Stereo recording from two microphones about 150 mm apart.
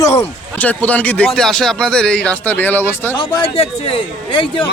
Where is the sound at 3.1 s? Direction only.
35° left (ahead or behind).